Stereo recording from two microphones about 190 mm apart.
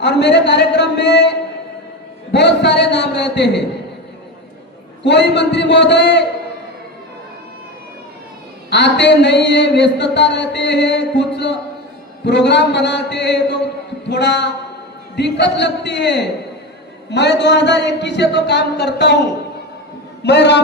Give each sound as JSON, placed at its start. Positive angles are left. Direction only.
{"t": 0.0, "sound": "a man's voice", "side_deg": 65}
{"t": 5.0, "sound": "a man's voice", "side_deg": 65}
{"t": 8.7, "sound": "a man's voice", "side_deg": 65}